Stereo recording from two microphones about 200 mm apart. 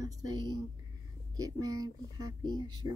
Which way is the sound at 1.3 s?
15° right (ahead or behind).